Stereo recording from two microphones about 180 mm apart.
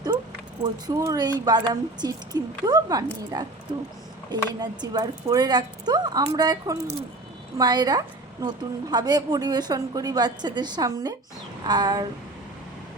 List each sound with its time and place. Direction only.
0.6 s a woman's voice: 20° right (ahead or behind)